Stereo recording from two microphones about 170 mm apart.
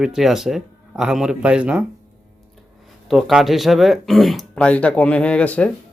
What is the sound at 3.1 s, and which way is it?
Speech, centre (ahead or behind).